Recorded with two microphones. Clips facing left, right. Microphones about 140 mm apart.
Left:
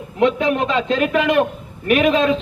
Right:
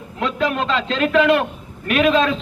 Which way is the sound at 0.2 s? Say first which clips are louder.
Left 4 dB; 20° left (ahead or behind).